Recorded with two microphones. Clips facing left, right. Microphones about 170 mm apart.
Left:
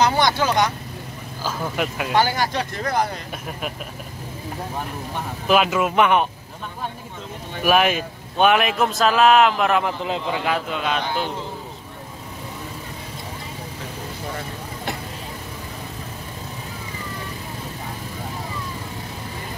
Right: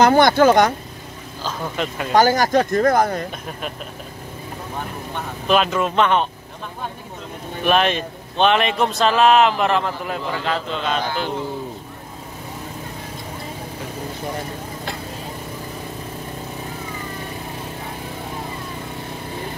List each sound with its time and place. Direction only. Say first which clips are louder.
0.0 s speech: right 6 dB; 50° right (ahead or behind)
1.4 s a man's voice: even; 5° left (ahead or behind)
2.1 s speech: right 6 dB; 45° right (ahead or behind)
5.5 s a man's voice: even; 10° left (ahead or behind)
7.6 s a man's voice: even; 5° left (ahead or behind)
9.8 s a man's voice: left 1 dB; 20° left (ahead or behind)
10.4 s a man's voice: even; 10° left (ahead or behind)